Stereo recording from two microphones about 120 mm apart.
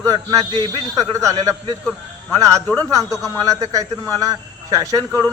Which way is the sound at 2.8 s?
25° right (ahead or behind).